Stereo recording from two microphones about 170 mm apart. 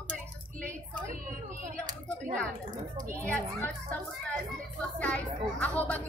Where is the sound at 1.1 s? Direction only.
50° right (ahead or behind).